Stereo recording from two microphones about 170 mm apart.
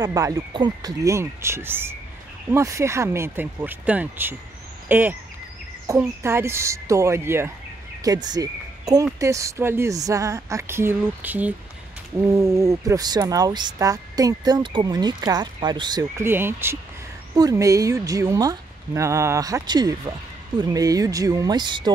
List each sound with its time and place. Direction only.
0.0 s speech: 20° right (ahead or behind)
4.8 s a sound: 10° right (ahead or behind)
5.9 s speech: 15° right (ahead or behind)